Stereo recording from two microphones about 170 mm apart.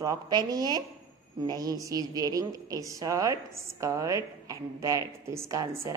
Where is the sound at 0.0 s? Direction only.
20° right (ahead or behind).